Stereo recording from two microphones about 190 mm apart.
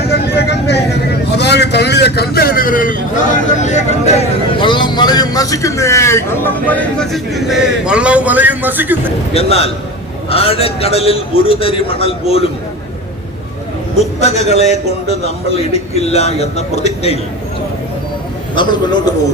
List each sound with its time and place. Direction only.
0.1 s vehicle: 60° left (ahead or behind)
1.4 s a sound: 60° left (ahead or behind); by 9.0 s 10° right (ahead or behind)
9.3 s a man's voice: 30° left (ahead or behind)
14.0 s a man's voice: 35° left (ahead or behind)
18.5 s a man's voice: 25° left (ahead or behind)